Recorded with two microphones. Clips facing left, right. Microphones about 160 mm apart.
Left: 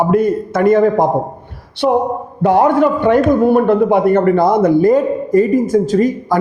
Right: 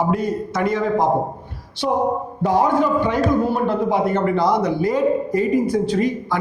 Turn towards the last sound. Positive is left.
turn(degrees=45)  # may be behind; listen again after turning